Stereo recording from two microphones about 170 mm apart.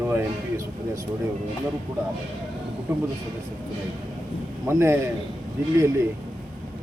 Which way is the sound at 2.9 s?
10° right (ahead or behind).